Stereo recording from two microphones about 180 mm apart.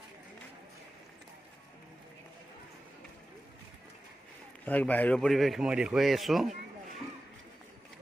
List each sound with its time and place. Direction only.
4.6 s speech: 10° left (ahead or behind)